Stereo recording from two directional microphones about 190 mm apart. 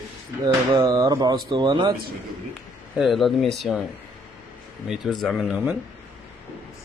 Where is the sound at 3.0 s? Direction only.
Centre (ahead or behind).